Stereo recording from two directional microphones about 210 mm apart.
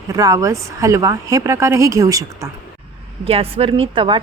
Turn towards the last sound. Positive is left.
turn(degrees=-25)  # may be behind; listen again after turning